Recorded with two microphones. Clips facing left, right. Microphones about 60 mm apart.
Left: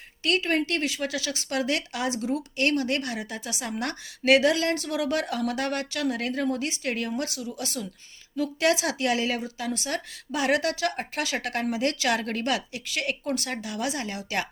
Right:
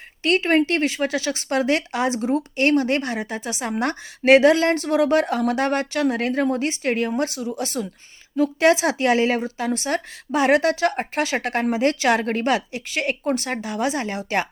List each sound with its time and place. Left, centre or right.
0.2 s speech: right